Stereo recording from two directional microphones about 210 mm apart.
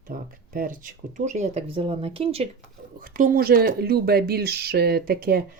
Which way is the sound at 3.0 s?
40° right (ahead or behind).